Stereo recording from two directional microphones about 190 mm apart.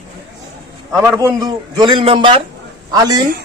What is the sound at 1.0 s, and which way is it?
Speech, 15° right (ahead or behind).